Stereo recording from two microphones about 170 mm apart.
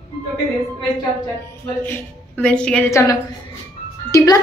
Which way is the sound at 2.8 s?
15° left (ahead or behind).